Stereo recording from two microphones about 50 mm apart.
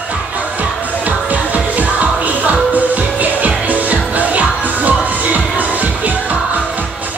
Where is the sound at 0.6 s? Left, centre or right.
Right.